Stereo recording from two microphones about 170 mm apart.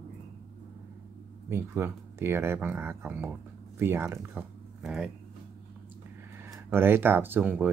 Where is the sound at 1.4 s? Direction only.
15° right (ahead or behind).